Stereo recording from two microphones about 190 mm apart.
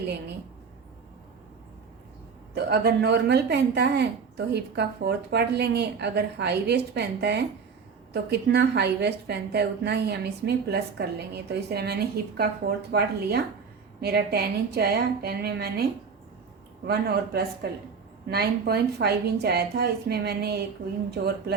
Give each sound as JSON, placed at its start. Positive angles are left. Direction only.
{"t": 2.6, "sound": "a woman's voice", "side_deg": -60}